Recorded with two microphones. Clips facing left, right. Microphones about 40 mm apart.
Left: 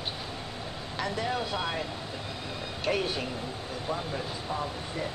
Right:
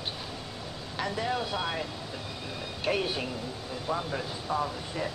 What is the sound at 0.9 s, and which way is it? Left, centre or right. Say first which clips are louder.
Speech: even; centre.